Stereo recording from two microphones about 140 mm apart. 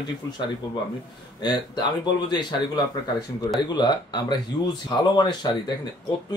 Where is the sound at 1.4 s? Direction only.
30° left (ahead or behind).